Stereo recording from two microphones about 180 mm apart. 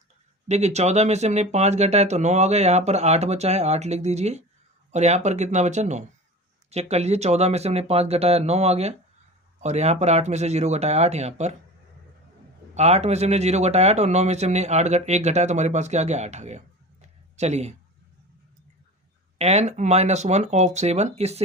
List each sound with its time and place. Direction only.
0.4 s speech: 40° right (ahead or behind)
12.7 s speech: 35° right (ahead or behind)
19.4 s speech: 40° right (ahead or behind)